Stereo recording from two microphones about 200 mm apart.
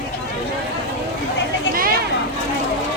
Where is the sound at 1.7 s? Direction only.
45° right (ahead or behind).